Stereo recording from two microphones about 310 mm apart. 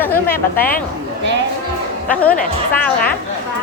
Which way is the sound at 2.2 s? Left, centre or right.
Centre.